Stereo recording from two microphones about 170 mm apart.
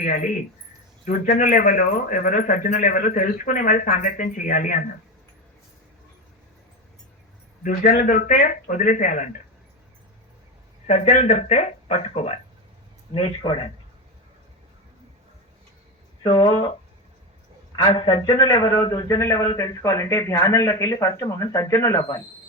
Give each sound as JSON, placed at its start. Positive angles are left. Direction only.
{"t": 0.0, "sound": "speech", "side_deg": 50}
{"t": 7.6, "sound": "speech", "side_deg": 55}
{"t": 10.8, "sound": "a man's voice", "side_deg": 45}
{"t": 16.2, "sound": "speech", "side_deg": 30}
{"t": 17.8, "sound": "a man's voice", "side_deg": 25}